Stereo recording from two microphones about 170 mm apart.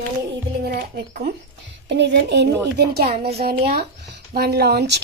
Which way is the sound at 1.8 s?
90° right.